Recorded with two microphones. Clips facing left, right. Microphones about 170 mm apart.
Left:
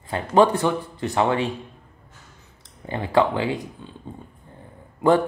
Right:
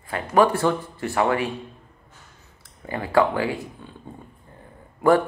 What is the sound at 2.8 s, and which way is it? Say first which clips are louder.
Speech: even; 20° left (ahead or behind).